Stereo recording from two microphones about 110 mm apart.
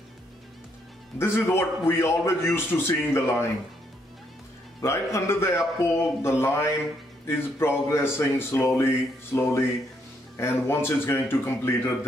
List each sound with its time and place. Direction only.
1.1 s speech: 20° left (ahead or behind)
4.8 s speech: 25° left (ahead or behind)